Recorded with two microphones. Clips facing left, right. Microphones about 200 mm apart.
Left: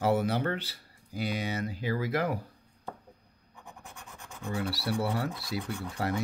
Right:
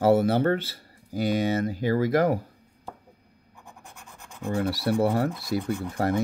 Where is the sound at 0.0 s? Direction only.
45° right (ahead or behind).